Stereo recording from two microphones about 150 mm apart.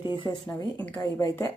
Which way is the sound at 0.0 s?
30° left (ahead or behind).